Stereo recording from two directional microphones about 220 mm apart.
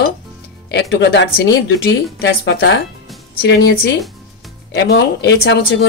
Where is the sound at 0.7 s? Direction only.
50° left (ahead or behind).